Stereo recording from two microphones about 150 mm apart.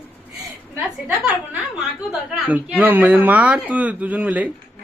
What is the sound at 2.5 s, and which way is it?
Speech, 10° right (ahead or behind).